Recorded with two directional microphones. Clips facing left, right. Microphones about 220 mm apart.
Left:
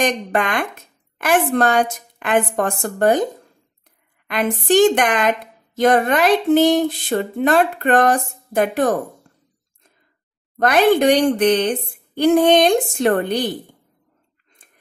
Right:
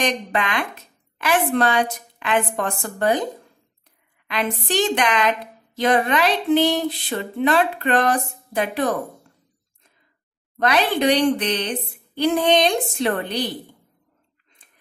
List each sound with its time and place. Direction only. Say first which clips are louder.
0.0 s a woman's voice: left 4 dB; 45° left (ahead or behind)
4.3 s a woman's voice: left 7 dB; 50° left (ahead or behind)
10.6 s a woman's voice: left 5 dB; 50° left (ahead or behind)
14.6 s a sound: left 4 dB; 45° left (ahead or behind)